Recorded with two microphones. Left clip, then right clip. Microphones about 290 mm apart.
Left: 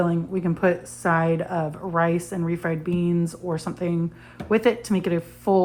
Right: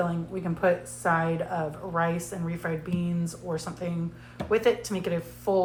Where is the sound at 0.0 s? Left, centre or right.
Left.